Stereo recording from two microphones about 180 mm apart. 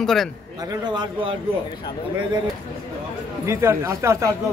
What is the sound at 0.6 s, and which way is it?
A man's voice, 25° right (ahead or behind).